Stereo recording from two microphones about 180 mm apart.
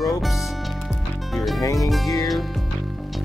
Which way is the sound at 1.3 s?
Centre (ahead or behind).